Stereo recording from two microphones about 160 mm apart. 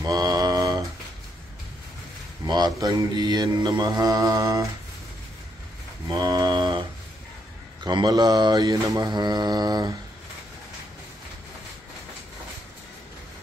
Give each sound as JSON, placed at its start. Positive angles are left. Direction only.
{"t": 0.0, "sound": "mantra", "side_deg": -20}
{"t": 2.4, "sound": "mantra", "side_deg": -25}
{"t": 6.0, "sound": "mantra", "side_deg": -20}
{"t": 7.8, "sound": "mantra", "side_deg": -25}